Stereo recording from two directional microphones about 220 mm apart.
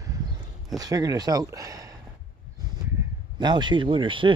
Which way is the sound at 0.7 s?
15° right (ahead or behind).